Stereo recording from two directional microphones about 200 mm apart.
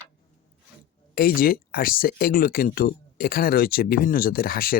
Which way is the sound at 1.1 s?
50° left (ahead or behind).